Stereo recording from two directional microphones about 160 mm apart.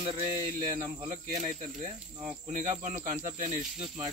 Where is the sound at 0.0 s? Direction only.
40° right (ahead or behind).